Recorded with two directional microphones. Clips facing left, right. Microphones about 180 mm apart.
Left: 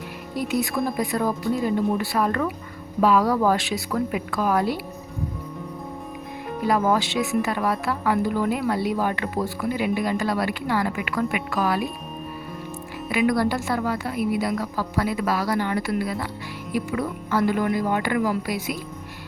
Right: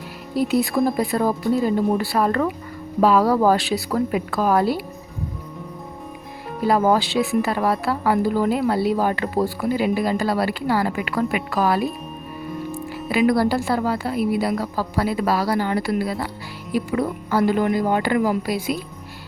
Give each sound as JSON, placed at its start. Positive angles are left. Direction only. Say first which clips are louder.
{"t": 0.3, "sound": "speech", "louder": "right 5 dB", "side_deg": -35}
{"t": 6.7, "sound": "speech", "louder": "right 3 dB", "side_deg": -35}
{"t": 13.1, "sound": "speech", "louder": "right 3 dB", "side_deg": -30}